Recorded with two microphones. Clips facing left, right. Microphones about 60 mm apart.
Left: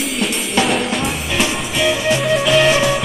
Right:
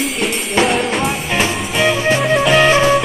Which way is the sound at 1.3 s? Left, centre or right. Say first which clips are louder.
Right 2 dB; right.